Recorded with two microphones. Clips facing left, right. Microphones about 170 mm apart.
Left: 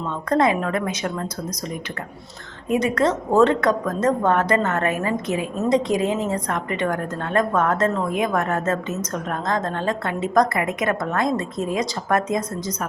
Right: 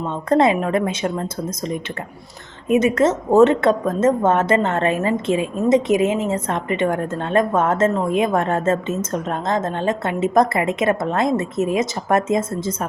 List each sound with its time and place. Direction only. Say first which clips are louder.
0.0 s a woman's voice: right 3 dB; 25° right (ahead or behind)